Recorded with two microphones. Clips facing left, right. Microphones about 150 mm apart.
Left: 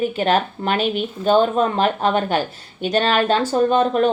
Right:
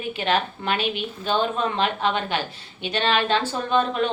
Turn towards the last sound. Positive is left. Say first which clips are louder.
# left 6 dB
turn(degrees=45)  # may be behind; listen again after turning